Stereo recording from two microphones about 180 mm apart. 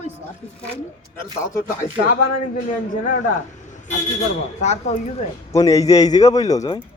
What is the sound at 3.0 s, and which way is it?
Speech, 45° left (ahead or behind).